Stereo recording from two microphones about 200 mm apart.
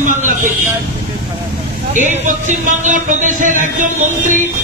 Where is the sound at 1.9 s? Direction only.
40° right (ahead or behind).